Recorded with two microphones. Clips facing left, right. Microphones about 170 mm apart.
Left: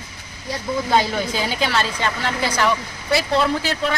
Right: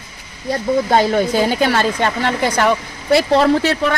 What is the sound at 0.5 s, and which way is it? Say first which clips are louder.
A woman's voice: right 5 dB; 55° right (ahead or behind).